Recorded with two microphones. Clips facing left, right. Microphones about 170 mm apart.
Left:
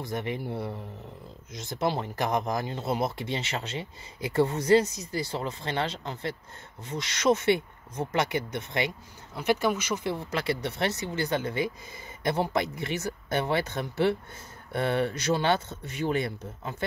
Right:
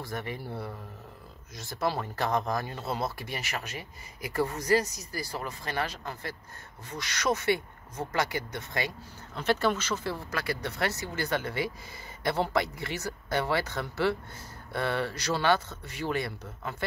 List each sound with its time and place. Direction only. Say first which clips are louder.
0.0 s speech: left 4 dB; 20° left (ahead or behind)